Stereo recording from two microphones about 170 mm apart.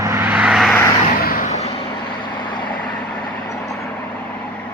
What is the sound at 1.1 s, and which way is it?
Vehicle, 55° left (ahead or behind).